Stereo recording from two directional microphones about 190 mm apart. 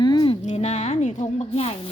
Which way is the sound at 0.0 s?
25° left (ahead or behind).